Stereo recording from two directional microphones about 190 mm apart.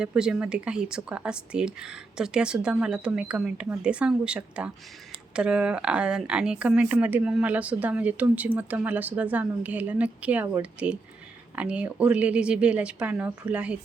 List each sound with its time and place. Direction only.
0.0 s speech: 5° right (ahead or behind)